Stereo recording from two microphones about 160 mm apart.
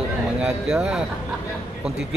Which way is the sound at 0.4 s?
5° right (ahead or behind).